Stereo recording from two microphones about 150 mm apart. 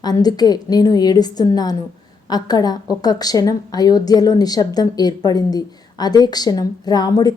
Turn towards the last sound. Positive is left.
turn(degrees=25)  # may be behind; listen again after turning